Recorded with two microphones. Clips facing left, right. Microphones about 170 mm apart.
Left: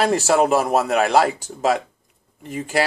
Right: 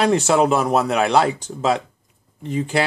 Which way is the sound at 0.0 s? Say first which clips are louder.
Right 1 dB; 5° left (ahead or behind).